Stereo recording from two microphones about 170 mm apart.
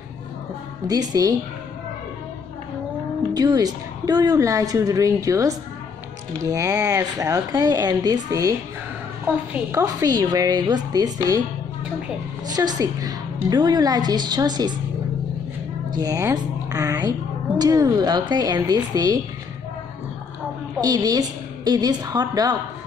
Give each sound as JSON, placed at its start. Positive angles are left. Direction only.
{"t": 1.1, "sound": "a woman's voice", "side_deg": -20}
{"t": 3.3, "sound": "a woman's voice", "side_deg": -25}
{"t": 12.4, "sound": "a woman's voice", "side_deg": -25}
{"t": 15.9, "sound": "a woman's voice", "side_deg": -20}
{"t": 20.8, "sound": "a woman's voice", "side_deg": -20}